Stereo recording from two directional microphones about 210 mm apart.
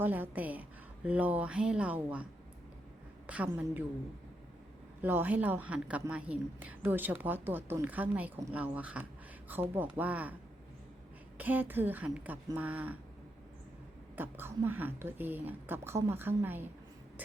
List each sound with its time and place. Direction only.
0.0 s a woman's voice: 10° right (ahead or behind)
3.2 s a woman's voice: 5° right (ahead or behind)
5.0 s a woman's voice: 10° right (ahead or behind)
11.3 s a woman's voice: 10° right (ahead or behind)
14.2 s a woman's voice: 10° right (ahead or behind)